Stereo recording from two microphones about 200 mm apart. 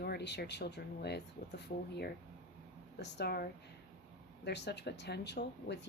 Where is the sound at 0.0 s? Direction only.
55° left (ahead or behind).